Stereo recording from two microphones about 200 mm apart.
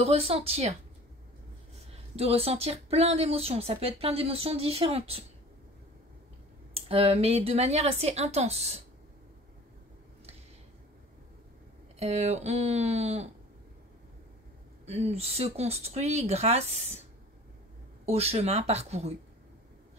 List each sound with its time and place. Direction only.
0.0 s a woman's voice: 30° right (ahead or behind)
2.1 s a woman's voice: 30° right (ahead or behind)
6.7 s speech: 30° right (ahead or behind)
12.0 s speech: 35° right (ahead or behind)
14.9 s speech: 30° right (ahead or behind)
18.0 s speech: 30° right (ahead or behind)